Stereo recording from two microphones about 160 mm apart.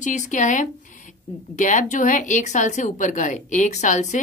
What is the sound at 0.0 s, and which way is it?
Speech, 50° left (ahead or behind).